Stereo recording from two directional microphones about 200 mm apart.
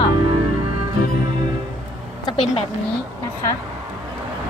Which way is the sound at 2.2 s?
30° left (ahead or behind).